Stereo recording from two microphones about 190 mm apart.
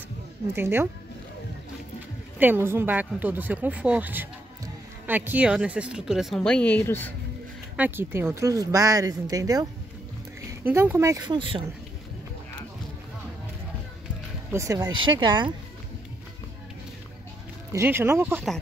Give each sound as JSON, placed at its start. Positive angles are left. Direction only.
{"t": 0.5, "sound": "speech", "side_deg": -10}
{"t": 2.3, "sound": "speech", "side_deg": -10}
{"t": 7.7, "sound": "speech", "side_deg": -10}
{"t": 14.5, "sound": "speech", "side_deg": -15}
{"t": 17.7, "sound": "speech", "side_deg": -10}